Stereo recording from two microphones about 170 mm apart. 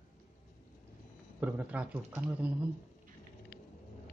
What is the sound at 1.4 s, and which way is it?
Speech, 10° right (ahead or behind).